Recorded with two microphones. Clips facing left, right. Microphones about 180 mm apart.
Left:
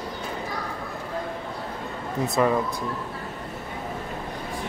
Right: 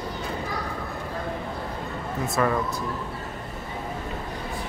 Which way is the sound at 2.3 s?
15° left (ahead or behind).